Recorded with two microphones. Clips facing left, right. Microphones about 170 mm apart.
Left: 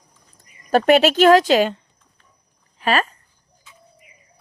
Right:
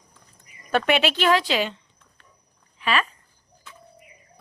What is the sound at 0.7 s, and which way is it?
Speech, 40° left (ahead or behind).